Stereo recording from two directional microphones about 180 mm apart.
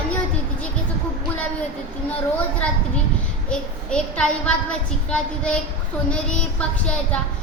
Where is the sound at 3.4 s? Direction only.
5° left (ahead or behind).